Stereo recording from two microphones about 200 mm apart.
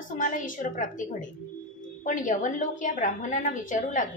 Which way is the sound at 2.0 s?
40° left (ahead or behind).